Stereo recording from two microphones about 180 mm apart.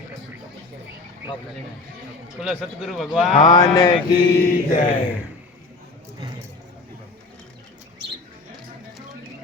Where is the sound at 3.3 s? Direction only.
25° left (ahead or behind).